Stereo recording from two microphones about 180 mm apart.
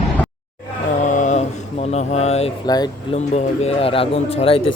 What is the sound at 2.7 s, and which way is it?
Speech, 20° left (ahead or behind).